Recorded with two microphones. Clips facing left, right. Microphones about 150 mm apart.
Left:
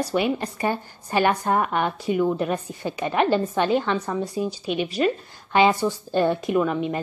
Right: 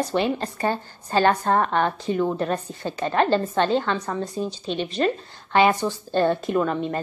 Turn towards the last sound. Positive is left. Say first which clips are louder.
# left 1 dB
turn(degrees=10)  # may be behind; listen again after turning